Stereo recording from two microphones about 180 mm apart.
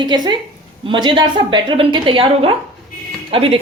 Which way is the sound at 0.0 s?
25° right (ahead or behind).